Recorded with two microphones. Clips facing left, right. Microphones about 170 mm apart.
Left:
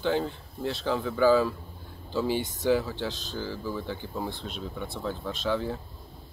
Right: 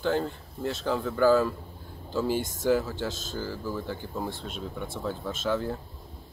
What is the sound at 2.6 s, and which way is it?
Speech, centre (ahead or behind).